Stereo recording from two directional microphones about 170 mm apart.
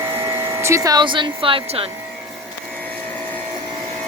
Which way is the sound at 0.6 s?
20° right (ahead or behind).